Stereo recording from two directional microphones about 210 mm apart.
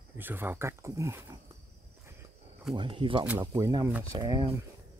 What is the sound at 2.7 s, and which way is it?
Speech, 25° right (ahead or behind).